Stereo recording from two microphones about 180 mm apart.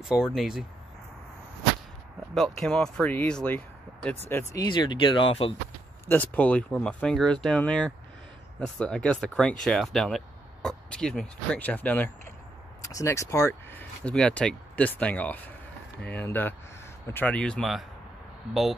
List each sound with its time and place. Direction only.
0.0 s speech: 5° right (ahead or behind)
2.3 s speech: centre (ahead or behind); by 5.5 s 30° left (ahead or behind)
6.0 s speech: 10° left (ahead or behind)